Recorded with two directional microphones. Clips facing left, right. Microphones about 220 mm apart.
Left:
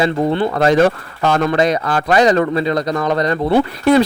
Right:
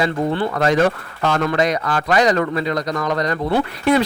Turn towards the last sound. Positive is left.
turn(degrees=30)  # may be behind; listen again after turning